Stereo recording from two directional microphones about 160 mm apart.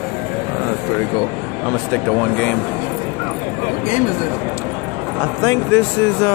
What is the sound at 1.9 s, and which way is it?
Speech, 10° left (ahead or behind).